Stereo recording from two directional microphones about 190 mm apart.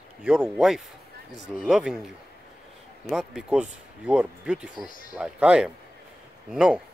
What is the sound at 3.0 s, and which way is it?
Speech, 5° right (ahead or behind).